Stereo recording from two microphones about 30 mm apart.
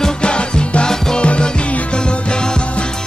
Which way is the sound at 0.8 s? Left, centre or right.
Centre.